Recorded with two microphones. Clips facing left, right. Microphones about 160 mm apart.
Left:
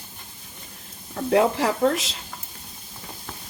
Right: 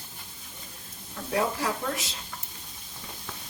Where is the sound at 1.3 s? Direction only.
75° left (ahead or behind).